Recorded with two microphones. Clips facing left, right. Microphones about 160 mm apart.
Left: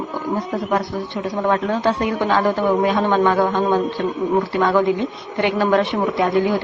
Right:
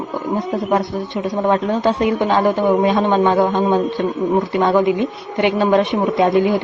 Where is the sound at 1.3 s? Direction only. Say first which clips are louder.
Right 2 dB; 20° right (ahead or behind).